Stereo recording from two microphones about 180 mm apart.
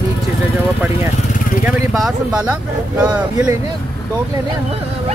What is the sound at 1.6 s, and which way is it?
Speech, centre (ahead or behind).